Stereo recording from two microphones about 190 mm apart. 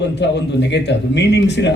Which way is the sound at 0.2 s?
65° left (ahead or behind).